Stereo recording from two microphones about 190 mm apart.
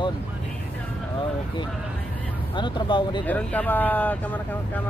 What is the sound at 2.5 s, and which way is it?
Speech, 25° left (ahead or behind).